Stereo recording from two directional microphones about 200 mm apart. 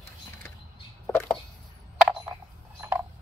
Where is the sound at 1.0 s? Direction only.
5° left (ahead or behind).